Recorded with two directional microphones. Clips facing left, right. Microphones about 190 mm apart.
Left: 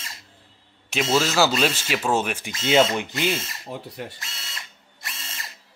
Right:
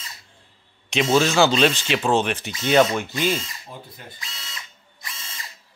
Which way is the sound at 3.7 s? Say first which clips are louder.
Left 7 dB; 75° left (ahead or behind).